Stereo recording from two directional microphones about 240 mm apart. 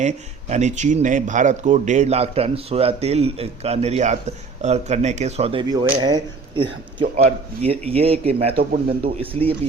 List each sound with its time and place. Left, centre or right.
0.0 s speech: right